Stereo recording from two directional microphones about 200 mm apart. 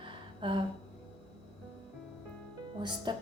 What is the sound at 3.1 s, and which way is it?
Speech, 20° right (ahead or behind).